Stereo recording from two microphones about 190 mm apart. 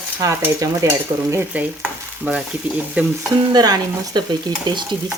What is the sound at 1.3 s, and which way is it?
Stir, 10° right (ahead or behind).